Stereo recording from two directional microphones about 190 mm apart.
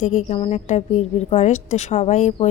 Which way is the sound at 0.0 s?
40° left (ahead or behind).